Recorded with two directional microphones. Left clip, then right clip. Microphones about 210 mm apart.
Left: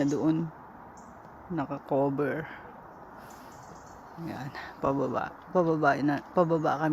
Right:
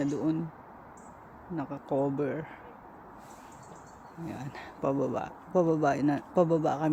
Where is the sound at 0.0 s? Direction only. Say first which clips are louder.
Left 3 dB; 20° left (ahead or behind).